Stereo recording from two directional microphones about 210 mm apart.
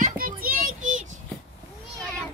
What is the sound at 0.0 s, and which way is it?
Child singing, 45° right (ahead or behind).